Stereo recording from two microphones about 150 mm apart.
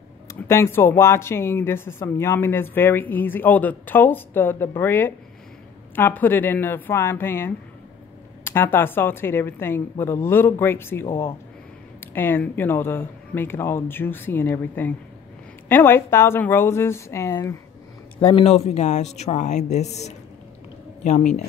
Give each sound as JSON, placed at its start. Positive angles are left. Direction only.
{"t": 0.3, "sound": "speech", "side_deg": 15}
{"t": 18.2, "sound": "speech", "side_deg": 40}